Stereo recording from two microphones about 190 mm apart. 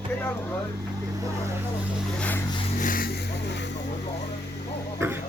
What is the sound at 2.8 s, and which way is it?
Vehicle, 45° left (ahead or behind).